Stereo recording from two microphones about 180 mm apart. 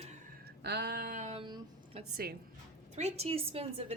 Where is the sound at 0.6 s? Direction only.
65° right (ahead or behind); by 1.4 s 45° right (ahead or behind).